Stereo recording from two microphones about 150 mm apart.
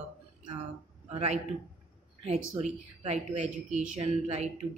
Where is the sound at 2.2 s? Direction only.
45° right (ahead or behind).